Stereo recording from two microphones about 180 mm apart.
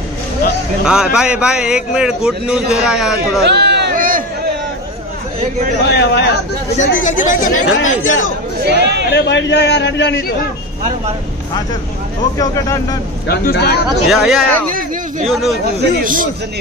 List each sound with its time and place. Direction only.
0.8 s a man's voice: 5° right (ahead or behind)
3.4 s a sound: 65° right (ahead or behind); by 4.2 s 50° right (ahead or behind)
5.9 s a man's voice: 65° left (ahead or behind)
6.8 s speech: 45° left (ahead or behind)
8.0 s speech: 90° left
8.6 s speech: 70° right (ahead or behind)
9.1 s a man's voice: 80° left
12.4 s speech: 20° left (ahead or behind)
13.3 s speech: 60° left (ahead or behind)
14.0 s a man's voice: centre (ahead or behind)
14.7 s a sound: 50° right (ahead or behind)
15.2 s a man's voice: centre (ahead or behind)
15.8 s a man's voice: 50° right (ahead or behind)